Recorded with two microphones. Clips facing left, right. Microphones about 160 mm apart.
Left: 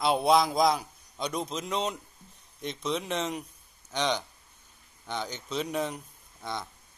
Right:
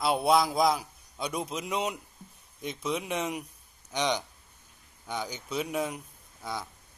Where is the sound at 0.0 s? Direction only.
5° right (ahead or behind).